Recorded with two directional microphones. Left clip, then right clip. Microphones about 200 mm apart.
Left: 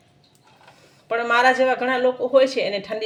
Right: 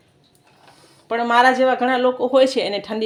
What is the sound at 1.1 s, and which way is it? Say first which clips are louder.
Speech: right 2 dB; 25° right (ahead or behind).